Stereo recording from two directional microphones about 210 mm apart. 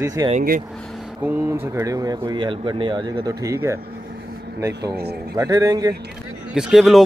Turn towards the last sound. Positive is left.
turn(degrees=0)  # may be behind; listen again after turning